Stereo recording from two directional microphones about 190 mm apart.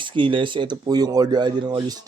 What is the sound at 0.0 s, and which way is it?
Speech, 25° right (ahead or behind).